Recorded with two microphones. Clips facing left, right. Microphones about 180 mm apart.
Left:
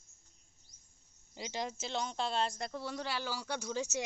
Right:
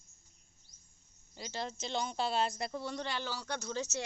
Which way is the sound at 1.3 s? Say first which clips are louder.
Left 1 dB; 15° left (ahead or behind).